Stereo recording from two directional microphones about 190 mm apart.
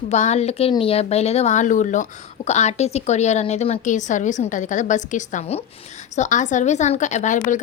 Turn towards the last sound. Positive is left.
turn(degrees=40)  # may be behind; listen again after turning